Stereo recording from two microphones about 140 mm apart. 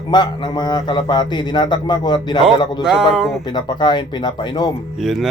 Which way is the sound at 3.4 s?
30° left (ahead or behind).